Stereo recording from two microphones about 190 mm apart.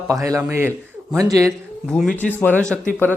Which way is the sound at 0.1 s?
15° right (ahead or behind).